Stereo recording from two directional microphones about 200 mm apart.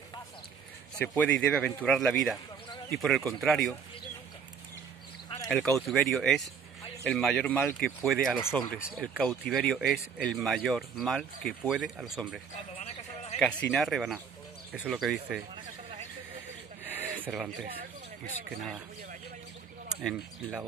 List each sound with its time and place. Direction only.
0.9 s a man's voice: 5° left (ahead or behind)
5.5 s speech: centre (ahead or behind)
12.7 s a sound: 35° left (ahead or behind)
13.4 s speech: 5° left (ahead or behind)
16.8 s a sound: 10° right (ahead or behind)
20.0 s speech: centre (ahead or behind)